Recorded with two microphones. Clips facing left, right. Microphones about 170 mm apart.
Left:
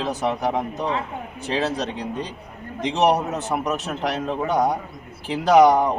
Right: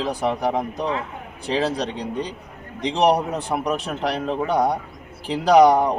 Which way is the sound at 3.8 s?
5° left (ahead or behind).